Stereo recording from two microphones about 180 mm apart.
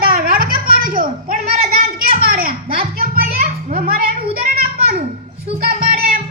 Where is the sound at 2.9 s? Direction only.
55° right (ahead or behind).